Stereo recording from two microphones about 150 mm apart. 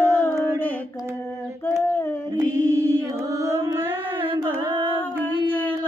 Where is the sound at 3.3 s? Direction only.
20° right (ahead or behind).